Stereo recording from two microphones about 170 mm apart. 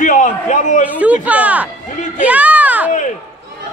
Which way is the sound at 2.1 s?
10° right (ahead or behind).